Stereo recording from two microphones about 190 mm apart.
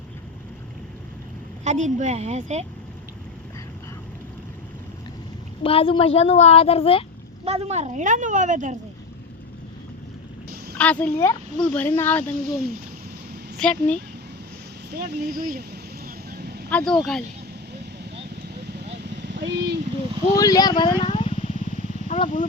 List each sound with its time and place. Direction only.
1.6 s speech: 40° right (ahead or behind)
5.6 s a child's voice: 30° left (ahead or behind)
7.4 s speech: 30° right (ahead or behind)
10.8 s speech: 5° left (ahead or behind)
13.6 s speech: 5° left (ahead or behind)
14.9 s speech: 60° right (ahead or behind)
16.3 s a sound: 55° right (ahead or behind)
16.6 s speech: 5° left (ahead or behind)
19.0 s vehicle: 65° right (ahead or behind)
20.3 s speech: 20° left (ahead or behind)
21.5 s wild animals: 40° right (ahead or behind)
22.1 s speech: 40° left (ahead or behind)